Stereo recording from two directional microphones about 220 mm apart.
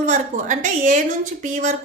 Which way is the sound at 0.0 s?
35° right (ahead or behind).